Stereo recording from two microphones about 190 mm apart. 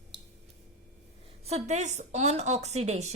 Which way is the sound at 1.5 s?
35° right (ahead or behind).